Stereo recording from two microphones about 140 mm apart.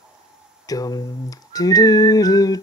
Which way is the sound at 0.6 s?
25° left (ahead or behind).